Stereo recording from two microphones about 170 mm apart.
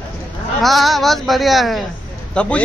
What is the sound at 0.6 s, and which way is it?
A man's voice, centre (ahead or behind).